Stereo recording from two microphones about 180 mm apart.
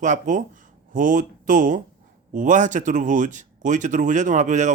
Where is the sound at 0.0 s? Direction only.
45° right (ahead or behind).